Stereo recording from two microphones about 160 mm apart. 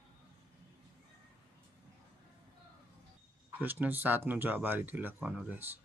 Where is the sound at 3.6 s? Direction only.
10° right (ahead or behind).